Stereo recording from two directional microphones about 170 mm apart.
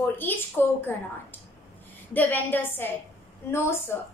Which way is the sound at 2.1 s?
10° left (ahead or behind).